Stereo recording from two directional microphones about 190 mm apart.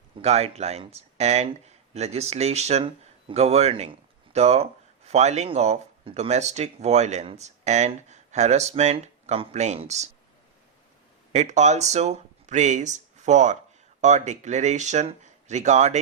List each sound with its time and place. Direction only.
0.2 s speech: 35° right (ahead or behind)
11.3 s speech: 40° right (ahead or behind)